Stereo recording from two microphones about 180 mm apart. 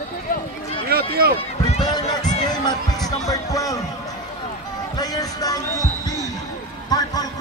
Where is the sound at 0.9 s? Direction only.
60° right (ahead or behind).